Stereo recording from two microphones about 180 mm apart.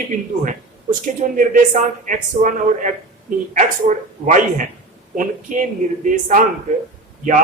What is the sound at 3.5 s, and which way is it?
Speech, 45° right (ahead or behind).